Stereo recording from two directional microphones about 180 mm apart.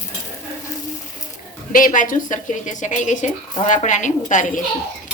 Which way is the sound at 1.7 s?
50° left (ahead or behind).